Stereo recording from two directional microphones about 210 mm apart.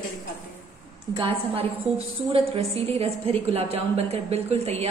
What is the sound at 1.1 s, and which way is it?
A woman's voice, 25° right (ahead or behind).